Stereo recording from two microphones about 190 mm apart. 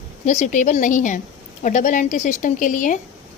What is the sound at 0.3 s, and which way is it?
A woman's voice, 40° left (ahead or behind).